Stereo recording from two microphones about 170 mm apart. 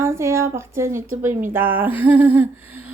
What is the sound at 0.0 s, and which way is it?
Speech, 15° right (ahead or behind).